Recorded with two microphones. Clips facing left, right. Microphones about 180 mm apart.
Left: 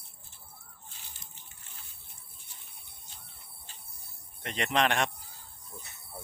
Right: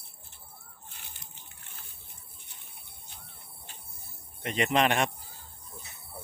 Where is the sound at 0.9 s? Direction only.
60° right (ahead or behind).